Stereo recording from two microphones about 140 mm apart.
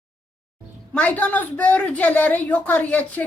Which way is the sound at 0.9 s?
10° left (ahead or behind).